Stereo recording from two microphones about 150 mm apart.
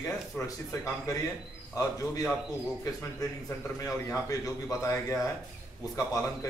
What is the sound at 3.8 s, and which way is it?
A man's voice, 20° left (ahead or behind).